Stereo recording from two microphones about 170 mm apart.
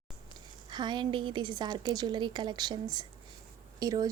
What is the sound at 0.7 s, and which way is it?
A woman's voice, 25° right (ahead or behind).